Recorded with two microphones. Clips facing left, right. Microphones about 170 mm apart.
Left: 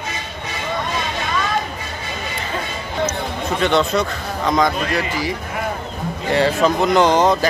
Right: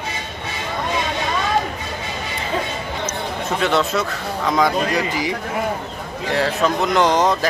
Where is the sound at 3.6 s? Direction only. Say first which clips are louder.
Left 2 dB; 5° right (ahead or behind).